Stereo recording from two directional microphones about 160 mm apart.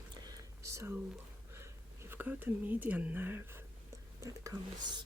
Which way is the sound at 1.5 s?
15° right (ahead or behind).